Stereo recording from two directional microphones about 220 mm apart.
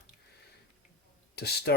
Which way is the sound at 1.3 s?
45° left (ahead or behind).